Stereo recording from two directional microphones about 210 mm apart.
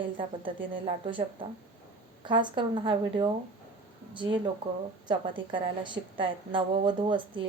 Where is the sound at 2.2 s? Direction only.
20° right (ahead or behind).